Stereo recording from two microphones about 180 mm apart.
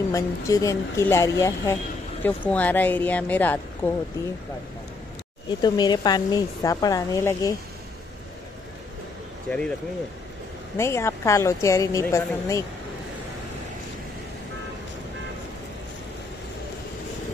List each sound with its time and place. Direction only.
0.1 s a woman's voice: 20° left (ahead or behind)
5.6 s speech: 20° left (ahead or behind)
9.5 s speech: 5° left (ahead or behind)
10.8 s a woman's voice: 15° left (ahead or behind)